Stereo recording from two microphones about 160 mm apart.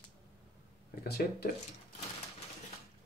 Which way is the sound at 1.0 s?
75° left (ahead or behind).